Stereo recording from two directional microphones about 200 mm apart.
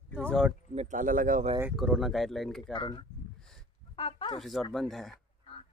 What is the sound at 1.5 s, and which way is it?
Speech, 5° right (ahead or behind).